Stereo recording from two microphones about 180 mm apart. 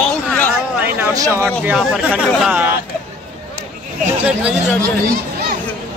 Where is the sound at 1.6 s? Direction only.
5° right (ahead or behind).